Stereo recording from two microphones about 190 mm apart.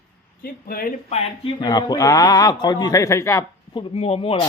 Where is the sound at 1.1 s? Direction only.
25° left (ahead or behind).